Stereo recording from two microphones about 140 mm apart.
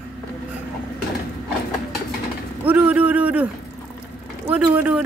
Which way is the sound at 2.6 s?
10° right (ahead or behind).